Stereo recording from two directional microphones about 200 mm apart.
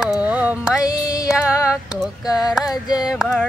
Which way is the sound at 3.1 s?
Centre (ahead or behind).